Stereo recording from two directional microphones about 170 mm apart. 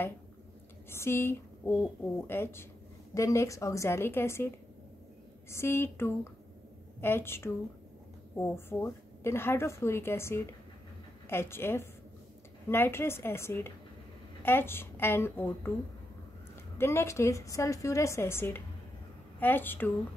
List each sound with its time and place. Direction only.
0.8 s a woman's voice: 15° left (ahead or behind)
16.7 s a woman's voice: 15° left (ahead or behind)